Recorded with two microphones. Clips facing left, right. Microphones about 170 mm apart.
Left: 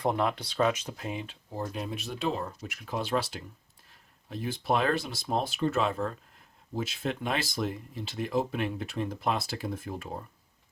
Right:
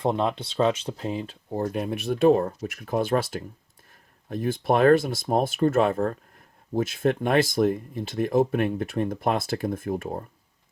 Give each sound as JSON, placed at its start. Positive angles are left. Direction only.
{"t": 0.0, "sound": "speech", "side_deg": -25}
{"t": 1.5, "sound": "speech", "side_deg": -55}